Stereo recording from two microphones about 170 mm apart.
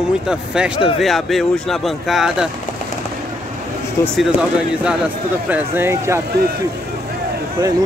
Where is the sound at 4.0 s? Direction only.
15° left (ahead or behind).